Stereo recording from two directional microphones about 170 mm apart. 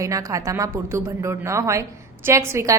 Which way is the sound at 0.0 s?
20° right (ahead or behind).